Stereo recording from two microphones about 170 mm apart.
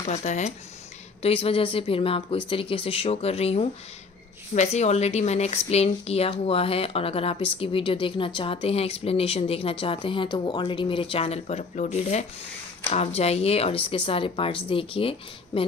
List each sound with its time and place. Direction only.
0.0 s speech: 45° left (ahead or behind)